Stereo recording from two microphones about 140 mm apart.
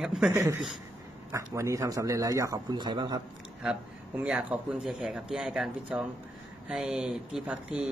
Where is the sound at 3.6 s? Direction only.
5° right (ahead or behind).